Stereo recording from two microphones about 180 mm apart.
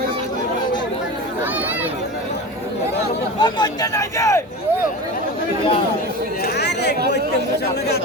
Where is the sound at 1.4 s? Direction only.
10° right (ahead or behind).